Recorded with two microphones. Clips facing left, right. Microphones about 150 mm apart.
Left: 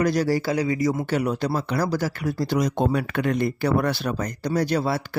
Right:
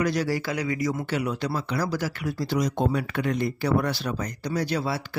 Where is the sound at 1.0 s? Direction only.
45° left (ahead or behind).